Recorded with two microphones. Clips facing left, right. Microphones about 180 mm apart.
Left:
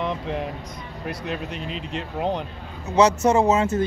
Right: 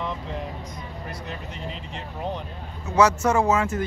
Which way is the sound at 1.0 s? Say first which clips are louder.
Left 9 dB; 75° left (ahead or behind).